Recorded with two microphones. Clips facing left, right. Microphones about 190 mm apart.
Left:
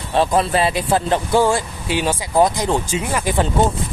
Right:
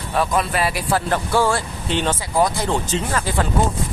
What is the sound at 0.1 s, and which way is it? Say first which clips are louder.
Speech: left 4 dB; 30° left (ahead or behind).